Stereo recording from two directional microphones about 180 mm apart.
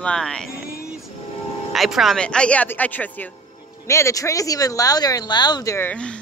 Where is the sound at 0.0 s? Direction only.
5° left (ahead or behind).